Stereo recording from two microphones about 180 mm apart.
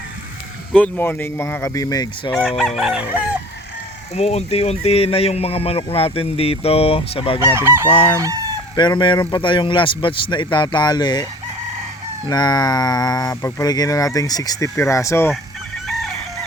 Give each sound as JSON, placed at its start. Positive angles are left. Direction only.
{"t": 0.7, "sound": "speech", "side_deg": 10}
{"t": 2.4, "sound": "chicken", "side_deg": 0}
{"t": 4.1, "sound": "speech", "side_deg": 35}
{"t": 7.4, "sound": "speech", "side_deg": -15}
{"t": 7.9, "sound": "speech", "side_deg": 30}
{"t": 12.3, "sound": "speech", "side_deg": 25}